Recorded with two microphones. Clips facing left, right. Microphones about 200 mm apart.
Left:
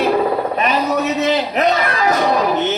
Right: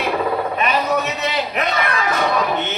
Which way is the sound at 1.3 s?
40° left (ahead or behind).